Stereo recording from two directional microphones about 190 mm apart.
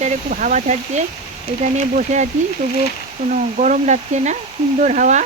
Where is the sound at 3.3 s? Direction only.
40° right (ahead or behind).